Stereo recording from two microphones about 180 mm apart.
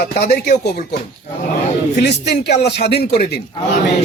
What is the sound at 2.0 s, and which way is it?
A man's voice, 70° left (ahead or behind).